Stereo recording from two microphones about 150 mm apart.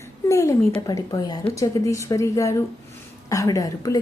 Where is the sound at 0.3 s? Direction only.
20° left (ahead or behind).